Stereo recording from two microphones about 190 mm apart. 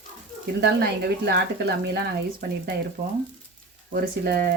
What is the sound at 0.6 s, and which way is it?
Speech, 60° right (ahead or behind).